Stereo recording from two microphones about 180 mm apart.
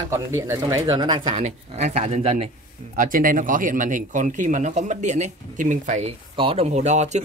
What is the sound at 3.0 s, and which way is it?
Speech, 50° right (ahead or behind).